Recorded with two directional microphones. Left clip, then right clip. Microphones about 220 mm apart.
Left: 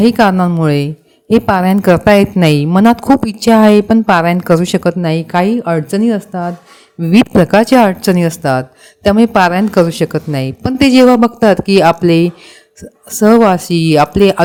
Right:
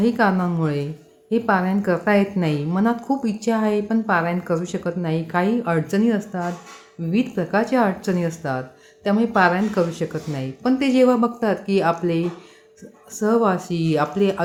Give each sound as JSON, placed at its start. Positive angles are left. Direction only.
{"t": 0.0, "sound": "a woman's voice", "side_deg": 45}